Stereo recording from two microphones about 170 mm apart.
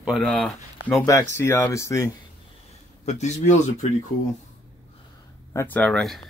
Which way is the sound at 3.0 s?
45° left (ahead or behind).